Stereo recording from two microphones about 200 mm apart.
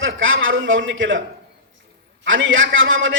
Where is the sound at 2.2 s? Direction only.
75° right (ahead or behind).